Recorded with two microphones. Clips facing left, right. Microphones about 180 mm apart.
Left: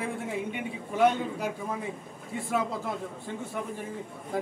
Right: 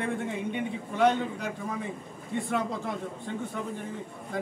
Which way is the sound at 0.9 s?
10° left (ahead or behind).